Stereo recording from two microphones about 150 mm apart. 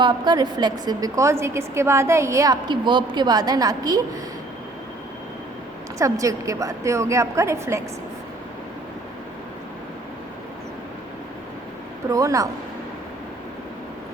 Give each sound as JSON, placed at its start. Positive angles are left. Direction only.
{"t": 0.0, "sound": "a woman's voice", "side_deg": -30}
{"t": 6.0, "sound": "a woman's voice", "side_deg": -20}
{"t": 12.1, "sound": "a woman's voice", "side_deg": -20}